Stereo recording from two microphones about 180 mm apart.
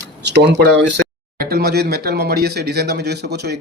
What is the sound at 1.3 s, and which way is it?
Speech, 60° right (ahead or behind).